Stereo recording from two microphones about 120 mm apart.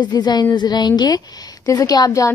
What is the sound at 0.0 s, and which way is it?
A woman's voice, 35° left (ahead or behind).